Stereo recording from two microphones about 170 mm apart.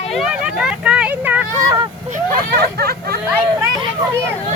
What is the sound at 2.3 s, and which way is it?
Hubbub, 65° right (ahead or behind).